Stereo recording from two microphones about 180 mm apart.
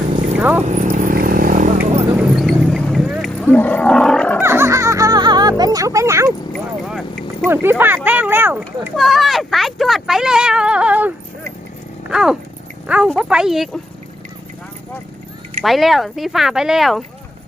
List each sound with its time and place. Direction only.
0.3 s horse: 10° right (ahead or behind)
0.6 s a sound: 40° right (ahead or behind)
2.3 s roaring cats: centre (ahead or behind)
4.4 s music: 15° right (ahead or behind)
6.5 s vehicle: centre (ahead or behind)
7.4 s speech: 10° right (ahead or behind)
9.0 s speech: centre (ahead or behind)
12.1 s speech: 5° right (ahead or behind)
15.6 s speech: centre (ahead or behind)